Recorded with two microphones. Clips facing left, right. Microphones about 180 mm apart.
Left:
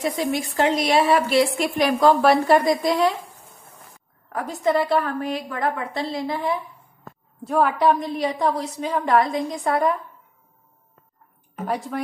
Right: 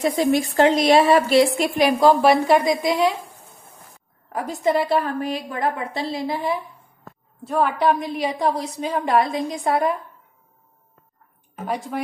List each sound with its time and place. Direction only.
0.0 s speech: 40° right (ahead or behind)
1.4 s a woman's voice: 15° right (ahead or behind)
4.3 s a woman's voice: 10° right (ahead or behind)
7.4 s a woman's voice: 5° left (ahead or behind)
11.6 s a woman's voice: 5° right (ahead or behind)